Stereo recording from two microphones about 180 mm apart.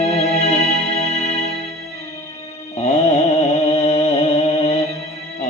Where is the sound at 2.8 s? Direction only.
40° left (ahead or behind).